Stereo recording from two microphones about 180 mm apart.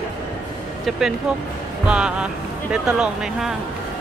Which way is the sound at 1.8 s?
5° right (ahead or behind).